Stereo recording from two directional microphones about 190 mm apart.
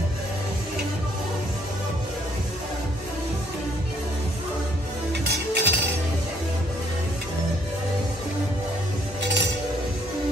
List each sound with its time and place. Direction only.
5.2 s music: 60° right (ahead or behind)
9.2 s music: 70° right (ahead or behind)